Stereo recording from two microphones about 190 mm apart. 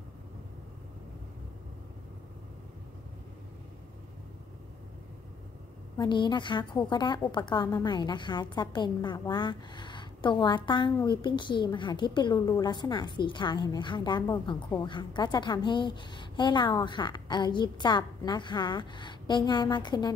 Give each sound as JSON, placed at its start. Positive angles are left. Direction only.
{"t": 5.9, "sound": "a woman's voice", "side_deg": 25}